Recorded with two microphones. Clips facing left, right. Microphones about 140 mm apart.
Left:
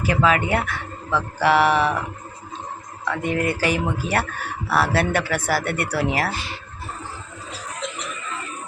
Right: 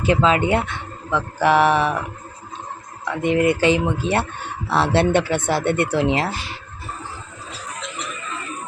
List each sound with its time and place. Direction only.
0.0 s speech: 25° right (ahead or behind)
3.0 s speech: 20° right (ahead or behind)